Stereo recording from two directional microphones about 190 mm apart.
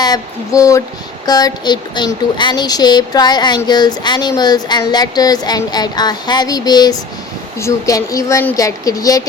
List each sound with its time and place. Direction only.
0.0 s speech: 20° left (ahead or behind)